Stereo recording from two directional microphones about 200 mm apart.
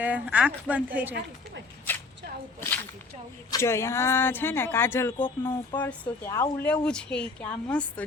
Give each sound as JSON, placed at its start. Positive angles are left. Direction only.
{"t": 0.0, "sound": "speech", "side_deg": -5}
{"t": 3.5, "sound": "speech", "side_deg": 15}